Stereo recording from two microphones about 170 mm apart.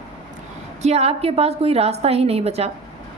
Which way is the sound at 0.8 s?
40° right (ahead or behind).